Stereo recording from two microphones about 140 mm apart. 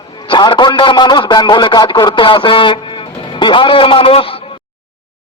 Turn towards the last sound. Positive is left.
turn(degrees=40)  # may be behind; listen again after turning